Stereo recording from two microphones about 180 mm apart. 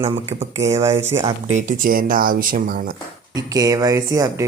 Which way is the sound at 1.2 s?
40° right (ahead or behind).